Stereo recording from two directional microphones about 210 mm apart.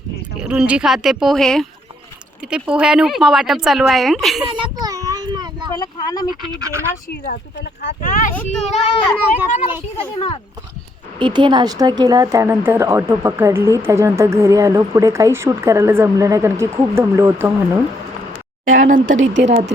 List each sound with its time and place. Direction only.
0.3 s speech: 5° right (ahead or behind)
4.4 s child singing: 20° right (ahead or behind)
5.7 s speech: 20° left (ahead or behind)
6.4 s speech: 20° right (ahead or behind)
7.8 s a child's voice: 45° left (ahead or behind)
11.2 s speech: 20° right (ahead or behind)
18.7 s speech: 40° right (ahead or behind)